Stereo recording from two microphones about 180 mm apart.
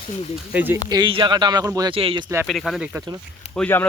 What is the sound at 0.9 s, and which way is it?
Speech, 25° right (ahead or behind).